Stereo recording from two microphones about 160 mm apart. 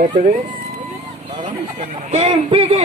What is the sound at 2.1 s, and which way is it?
Speech, 40° right (ahead or behind).